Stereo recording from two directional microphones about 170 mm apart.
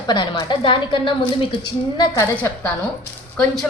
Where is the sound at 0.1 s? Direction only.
25° left (ahead or behind).